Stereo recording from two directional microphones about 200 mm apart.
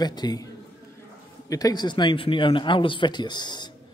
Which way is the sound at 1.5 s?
15° left (ahead or behind).